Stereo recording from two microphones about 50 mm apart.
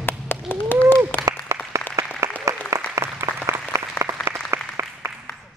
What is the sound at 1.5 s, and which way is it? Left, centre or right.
Applause, right.